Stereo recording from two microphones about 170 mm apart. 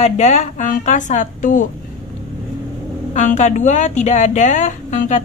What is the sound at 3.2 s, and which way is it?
Speech, 45° left (ahead or behind).